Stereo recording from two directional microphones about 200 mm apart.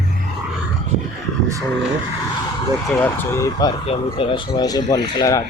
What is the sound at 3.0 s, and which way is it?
Speech, 10° left (ahead or behind).